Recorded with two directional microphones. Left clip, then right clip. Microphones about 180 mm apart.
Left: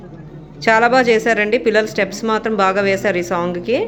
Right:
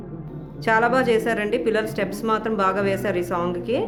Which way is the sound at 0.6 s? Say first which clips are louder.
Left 6 dB; 25° left (ahead or behind).